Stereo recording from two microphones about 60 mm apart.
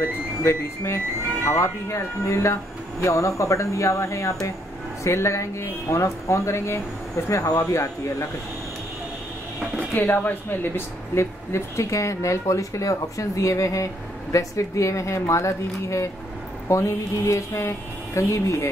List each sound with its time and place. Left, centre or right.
0.0 s speech: left
1.5 s speech: left
9.9 s speech: left
11.1 s speech: left